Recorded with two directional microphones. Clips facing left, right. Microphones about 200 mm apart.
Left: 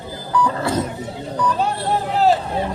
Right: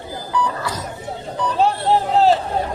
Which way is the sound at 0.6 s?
25° left (ahead or behind).